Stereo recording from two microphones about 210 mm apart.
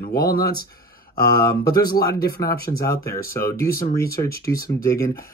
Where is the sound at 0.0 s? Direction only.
45° left (ahead or behind).